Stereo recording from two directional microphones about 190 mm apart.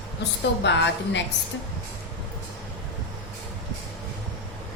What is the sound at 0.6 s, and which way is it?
Speech, 70° left (ahead or behind).